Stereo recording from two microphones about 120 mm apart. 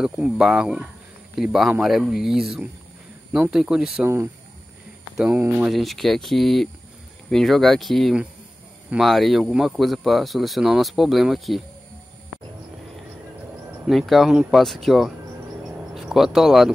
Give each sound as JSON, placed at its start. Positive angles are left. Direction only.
{"t": 0.0, "sound": "speech", "side_deg": -5}
{"t": 5.2, "sound": "speech", "side_deg": -15}
{"t": 5.7, "sound": "speech", "side_deg": 0}
{"t": 13.8, "sound": "speech", "side_deg": 0}